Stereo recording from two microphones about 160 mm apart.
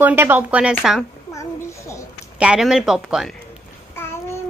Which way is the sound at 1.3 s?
20° left (ahead or behind).